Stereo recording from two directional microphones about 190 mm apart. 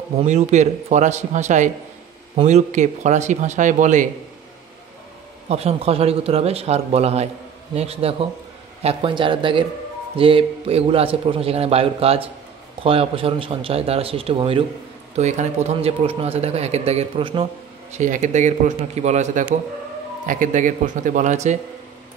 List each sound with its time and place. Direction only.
0.2 s a man's voice: 35° right (ahead or behind)
5.5 s a man's voice: 35° right (ahead or behind)
17.9 s a man's voice: 40° right (ahead or behind)